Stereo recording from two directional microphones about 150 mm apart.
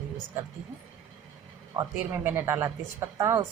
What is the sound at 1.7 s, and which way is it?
Speech, 15° right (ahead or behind).